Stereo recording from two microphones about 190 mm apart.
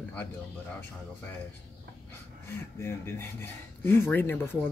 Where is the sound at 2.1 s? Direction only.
15° left (ahead or behind).